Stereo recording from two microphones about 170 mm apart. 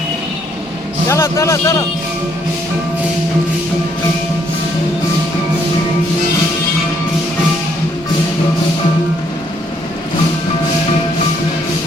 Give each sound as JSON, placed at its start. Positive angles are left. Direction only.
{"t": 1.0, "sound": "speech", "side_deg": 20}